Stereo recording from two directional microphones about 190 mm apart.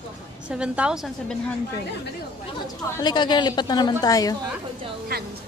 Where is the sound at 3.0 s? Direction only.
25° left (ahead or behind).